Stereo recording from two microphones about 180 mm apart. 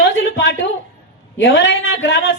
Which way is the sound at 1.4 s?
75° left (ahead or behind).